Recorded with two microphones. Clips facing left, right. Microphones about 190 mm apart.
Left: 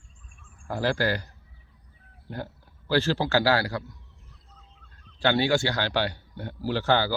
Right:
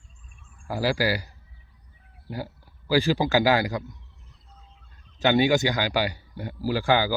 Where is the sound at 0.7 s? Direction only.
10° right (ahead or behind).